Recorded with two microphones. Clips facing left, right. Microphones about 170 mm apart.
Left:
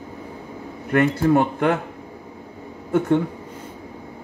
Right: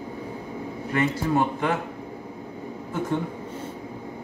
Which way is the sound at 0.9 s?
60° left (ahead or behind).